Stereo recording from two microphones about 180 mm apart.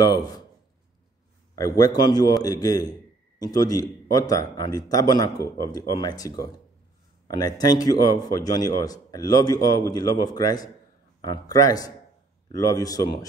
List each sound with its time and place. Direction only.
0.0 s a man's voice: 20° left (ahead or behind)
1.5 s a man's voice: 20° left (ahead or behind)